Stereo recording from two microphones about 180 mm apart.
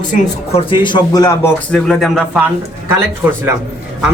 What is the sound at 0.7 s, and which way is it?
Speech, 25° left (ahead or behind).